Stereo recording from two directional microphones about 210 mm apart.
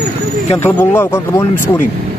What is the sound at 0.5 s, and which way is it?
Speech, 10° left (ahead or behind).